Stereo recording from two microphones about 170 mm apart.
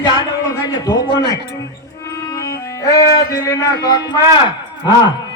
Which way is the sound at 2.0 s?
20° left (ahead or behind).